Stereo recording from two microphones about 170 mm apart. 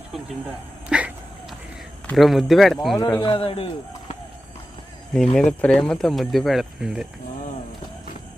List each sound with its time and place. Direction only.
0.9 s a sound: 5° right (ahead or behind)
2.1 s speech: centre (ahead or behind)
3.0 s speech: 25° left (ahead or behind)
5.1 s speech: 5° left (ahead or behind)